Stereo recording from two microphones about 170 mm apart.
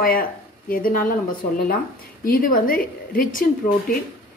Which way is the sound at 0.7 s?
55° left (ahead or behind).